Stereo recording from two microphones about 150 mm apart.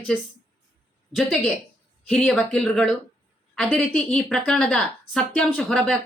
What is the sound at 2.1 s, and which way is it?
A woman's voice, centre (ahead or behind).